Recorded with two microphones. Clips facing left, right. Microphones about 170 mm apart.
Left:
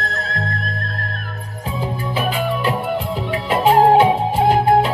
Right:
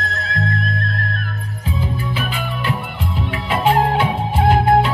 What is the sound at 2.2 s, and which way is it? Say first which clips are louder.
Music: left 5 dB; 40° left (ahead or behind).